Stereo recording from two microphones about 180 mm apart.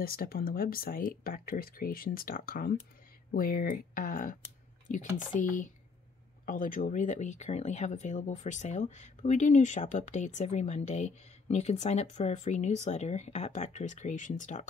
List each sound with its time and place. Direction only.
0.0 s speech: 55° left (ahead or behind)